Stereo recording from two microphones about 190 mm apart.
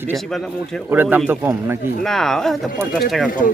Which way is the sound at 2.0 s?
Centre (ahead or behind).